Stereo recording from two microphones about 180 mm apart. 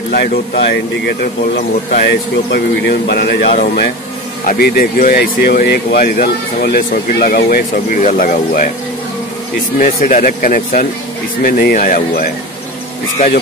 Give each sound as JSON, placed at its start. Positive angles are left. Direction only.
{"t": 0.1, "sound": "speech", "side_deg": 60}
{"t": 10.0, "sound": "speech", "side_deg": 50}